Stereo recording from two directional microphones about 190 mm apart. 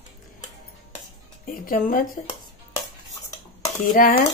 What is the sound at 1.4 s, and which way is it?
Speech, 50° left (ahead or behind).